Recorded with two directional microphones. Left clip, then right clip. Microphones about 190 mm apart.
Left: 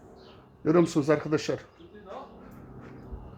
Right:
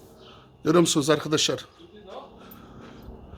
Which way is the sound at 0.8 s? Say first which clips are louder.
Right 3 dB; 15° right (ahead or behind).